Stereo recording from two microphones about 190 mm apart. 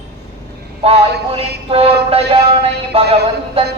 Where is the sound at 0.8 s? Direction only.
30° right (ahead or behind).